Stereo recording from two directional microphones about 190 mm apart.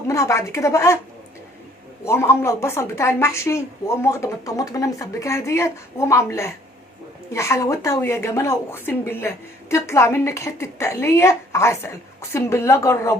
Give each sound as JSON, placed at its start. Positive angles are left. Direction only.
{"t": 0.1, "sound": "a woman's voice", "side_deg": 15}
{"t": 2.0, "sound": "a woman's voice", "side_deg": 15}